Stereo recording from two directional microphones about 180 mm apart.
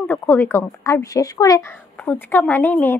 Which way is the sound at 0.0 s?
10° left (ahead or behind).